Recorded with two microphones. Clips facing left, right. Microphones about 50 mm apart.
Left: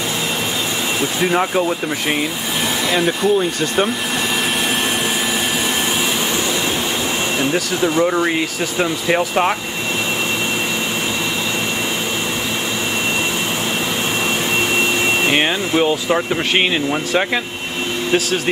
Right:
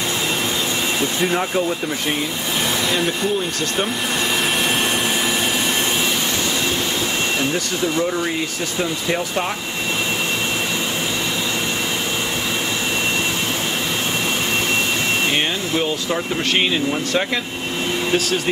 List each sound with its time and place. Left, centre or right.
1.3 s speech: centre
2.9 s speech: centre
7.8 s speech: left
15.2 s speech: left